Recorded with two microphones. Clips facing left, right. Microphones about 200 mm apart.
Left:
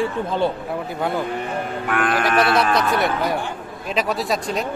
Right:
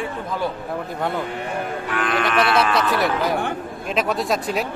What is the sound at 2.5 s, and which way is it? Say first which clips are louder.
A man's voice: left 1 dB; centre (ahead or behind).